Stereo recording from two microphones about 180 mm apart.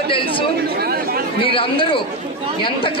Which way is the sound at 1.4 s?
30° left (ahead or behind).